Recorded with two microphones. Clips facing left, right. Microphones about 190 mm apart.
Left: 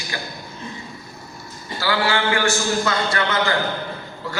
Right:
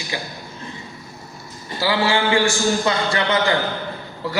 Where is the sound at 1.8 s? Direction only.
25° right (ahead or behind).